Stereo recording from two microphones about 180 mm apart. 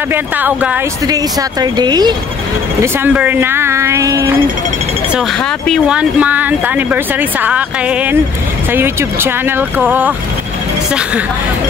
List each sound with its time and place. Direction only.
0.1 s speech: 10° right (ahead or behind)
1.0 s speech: 20° right (ahead or behind)
2.8 s speech: 10° right (ahead or behind)
5.4 s speech: centre (ahead or behind)